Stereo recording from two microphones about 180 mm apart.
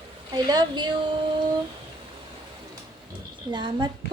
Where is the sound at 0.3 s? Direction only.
25° right (ahead or behind).